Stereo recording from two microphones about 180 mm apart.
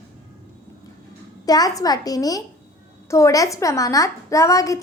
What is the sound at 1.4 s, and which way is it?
A child's voice, 20° left (ahead or behind).